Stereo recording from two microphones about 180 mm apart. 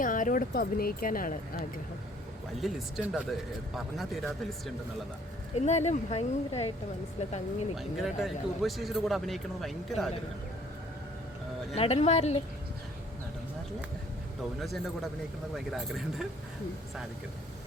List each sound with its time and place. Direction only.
0.0 s speech: 50° left (ahead or behind)
2.6 s speech: centre (ahead or behind)
5.5 s speech: 40° left (ahead or behind)
7.8 s speech: centre (ahead or behind)
11.7 s speech: 35° left (ahead or behind)
15.5 s speech: centre (ahead or behind)